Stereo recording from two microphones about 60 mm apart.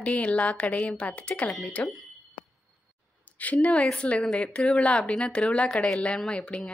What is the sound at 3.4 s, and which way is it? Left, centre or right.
A woman's voice, left.